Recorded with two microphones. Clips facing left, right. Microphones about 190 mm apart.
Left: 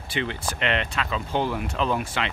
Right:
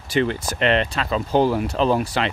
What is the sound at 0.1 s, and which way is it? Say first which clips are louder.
Speech: right 8 dB; 40° right (ahead or behind).